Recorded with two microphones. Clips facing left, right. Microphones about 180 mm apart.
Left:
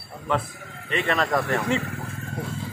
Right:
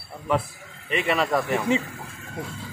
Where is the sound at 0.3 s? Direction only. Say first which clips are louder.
Right 1 dB; 10° right (ahead or behind).